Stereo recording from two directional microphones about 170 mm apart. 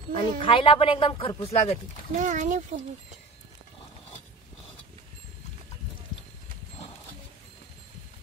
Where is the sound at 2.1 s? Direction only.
50° right (ahead or behind).